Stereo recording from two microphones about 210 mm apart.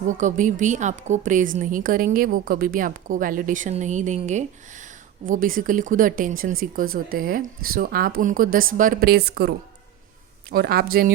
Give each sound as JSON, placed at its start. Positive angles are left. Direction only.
{"t": 0.2, "sound": "a woman's voice", "side_deg": -35}